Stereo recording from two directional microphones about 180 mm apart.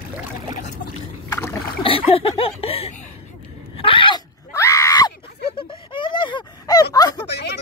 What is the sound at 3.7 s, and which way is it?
Dog, 30° left (ahead or behind).